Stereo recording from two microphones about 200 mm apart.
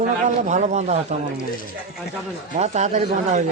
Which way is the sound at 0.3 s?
35° right (ahead or behind).